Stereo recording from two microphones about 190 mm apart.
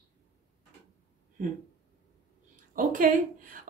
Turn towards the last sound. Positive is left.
turn(degrees=-45)  # may be behind; listen again after turning